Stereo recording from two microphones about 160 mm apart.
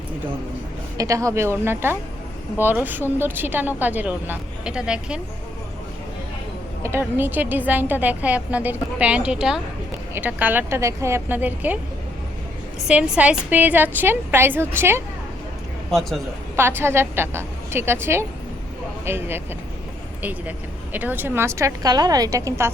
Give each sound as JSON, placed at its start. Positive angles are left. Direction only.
{"t": 0.9, "sound": "a woman's voice", "side_deg": -20}
{"t": 6.8, "sound": "a woman's voice", "side_deg": -15}
{"t": 12.9, "sound": "a woman's voice", "side_deg": -5}
{"t": 15.9, "sound": "a man's voice", "side_deg": 0}
{"t": 16.6, "sound": "a woman's voice", "side_deg": -15}
{"t": 20.9, "sound": "a woman's voice", "side_deg": -10}